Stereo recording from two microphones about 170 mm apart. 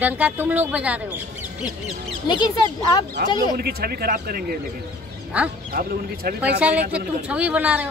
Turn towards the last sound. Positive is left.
turn(degrees=-10)  # may be behind; listen again after turning